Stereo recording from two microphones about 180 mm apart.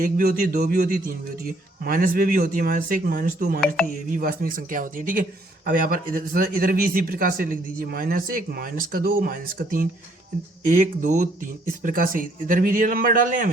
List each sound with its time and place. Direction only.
0.0 s speech: 55° right (ahead or behind)